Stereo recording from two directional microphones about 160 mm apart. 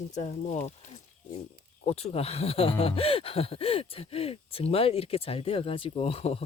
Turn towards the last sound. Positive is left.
turn(degrees=40)  # may be behind; listen again after turning